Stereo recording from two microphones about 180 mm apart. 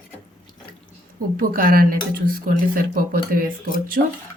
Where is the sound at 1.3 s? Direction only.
50° right (ahead or behind).